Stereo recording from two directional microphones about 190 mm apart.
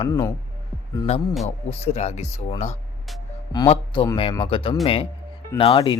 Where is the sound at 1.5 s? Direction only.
35° left (ahead or behind).